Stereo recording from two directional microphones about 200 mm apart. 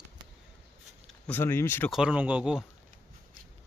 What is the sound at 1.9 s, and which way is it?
Speech, 5° right (ahead or behind).